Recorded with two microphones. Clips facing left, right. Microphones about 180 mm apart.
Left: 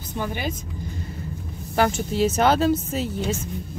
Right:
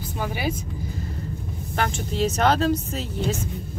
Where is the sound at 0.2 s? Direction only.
10° right (ahead or behind).